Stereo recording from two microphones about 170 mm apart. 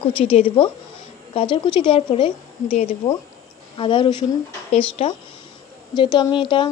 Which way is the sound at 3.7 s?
30° left (ahead or behind).